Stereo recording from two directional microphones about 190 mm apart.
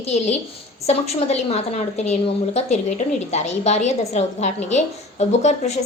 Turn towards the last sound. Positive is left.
turn(degrees=35)  # may be behind; listen again after turning